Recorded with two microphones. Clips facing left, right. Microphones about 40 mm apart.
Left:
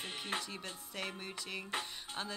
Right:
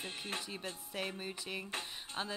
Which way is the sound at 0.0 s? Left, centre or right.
Left.